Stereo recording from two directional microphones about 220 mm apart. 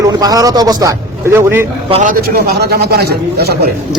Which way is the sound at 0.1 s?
15° right (ahead or behind).